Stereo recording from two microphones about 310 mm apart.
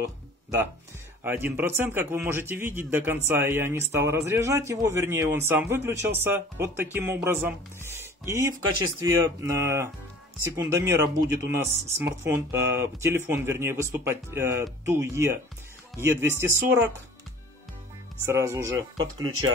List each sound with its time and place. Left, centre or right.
1.2 s speech: centre
18.2 s speech: centre